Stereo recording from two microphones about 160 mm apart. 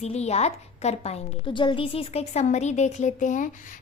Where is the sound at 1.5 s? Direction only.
30° left (ahead or behind).